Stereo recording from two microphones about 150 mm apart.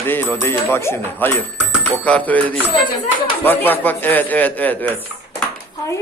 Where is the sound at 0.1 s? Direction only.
15° left (ahead or behind).